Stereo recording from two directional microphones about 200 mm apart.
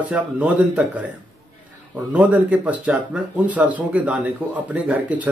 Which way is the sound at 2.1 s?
5° right (ahead or behind).